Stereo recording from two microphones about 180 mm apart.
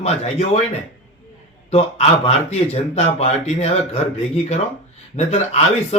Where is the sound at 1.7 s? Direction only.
35° left (ahead or behind).